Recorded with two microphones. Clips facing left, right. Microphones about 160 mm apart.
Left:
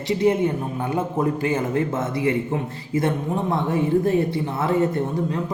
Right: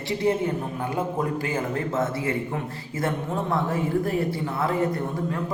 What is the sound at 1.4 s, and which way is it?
Speech, 20° left (ahead or behind).